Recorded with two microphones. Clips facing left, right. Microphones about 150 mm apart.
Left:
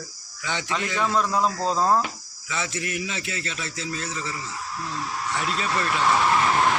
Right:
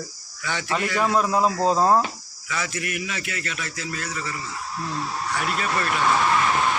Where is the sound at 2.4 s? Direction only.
25° left (ahead or behind).